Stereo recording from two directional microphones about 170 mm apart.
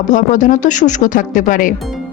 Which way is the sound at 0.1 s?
50° left (ahead or behind).